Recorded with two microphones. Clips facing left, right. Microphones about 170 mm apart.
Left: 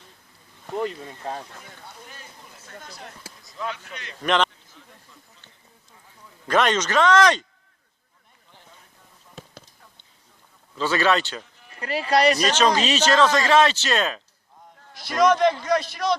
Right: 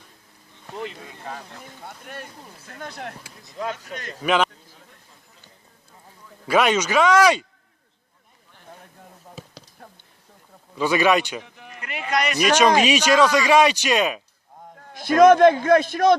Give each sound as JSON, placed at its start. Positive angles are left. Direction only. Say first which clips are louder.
{"t": 0.8, "sound": "speech", "louder": "left 5 dB", "side_deg": 40}
{"t": 2.7, "sound": "speech", "louder": "right 7 dB", "side_deg": -65}
{"t": 3.6, "sound": "speech", "louder": "right 3 dB", "side_deg": -40}
{"t": 4.2, "sound": "a man's voice", "louder": "right 1 dB", "side_deg": -5}
{"t": 6.5, "sound": "a man's voice", "louder": "right 2 dB", "side_deg": -10}
{"t": 10.8, "sound": "a man's voice", "louder": "right 3 dB", "side_deg": -15}
{"t": 11.4, "sound": "music", "louder": "right 9 dB", "side_deg": -65}
{"t": 11.8, "sound": "speech", "louder": "left 5 dB", "side_deg": 35}
{"t": 12.5, "sound": "a man's voice", "louder": "right 4 dB", "side_deg": -10}
{"t": 14.8, "sound": "a man's voice", "louder": "right 6 dB", "side_deg": -50}